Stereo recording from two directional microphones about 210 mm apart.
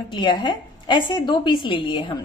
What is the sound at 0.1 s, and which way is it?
A woman's voice, 20° left (ahead or behind).